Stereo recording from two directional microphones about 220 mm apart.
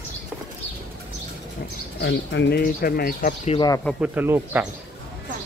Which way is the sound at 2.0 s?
50° left (ahead or behind).